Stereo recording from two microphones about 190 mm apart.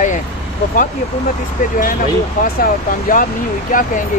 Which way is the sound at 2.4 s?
50° left (ahead or behind).